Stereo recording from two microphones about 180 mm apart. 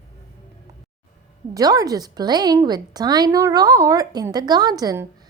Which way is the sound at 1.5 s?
20° right (ahead or behind).